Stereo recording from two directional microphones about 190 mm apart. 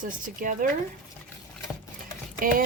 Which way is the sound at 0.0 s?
45° right (ahead or behind).